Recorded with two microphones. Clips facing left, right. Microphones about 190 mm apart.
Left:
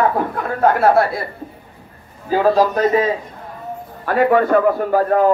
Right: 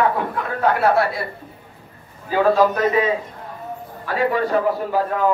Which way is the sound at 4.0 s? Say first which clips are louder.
Left 6 dB; 50° left (ahead or behind).